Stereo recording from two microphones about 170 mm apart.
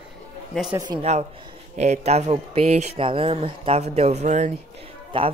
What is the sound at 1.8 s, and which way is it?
Speech, 40° right (ahead or behind).